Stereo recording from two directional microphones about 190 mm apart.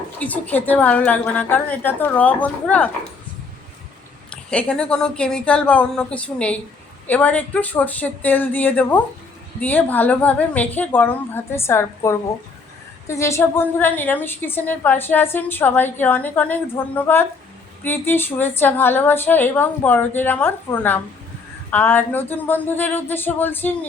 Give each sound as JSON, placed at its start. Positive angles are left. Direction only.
{"t": 0.2, "sound": "a woman's voice", "side_deg": 10}
{"t": 4.3, "sound": "a woman's voice", "side_deg": 5}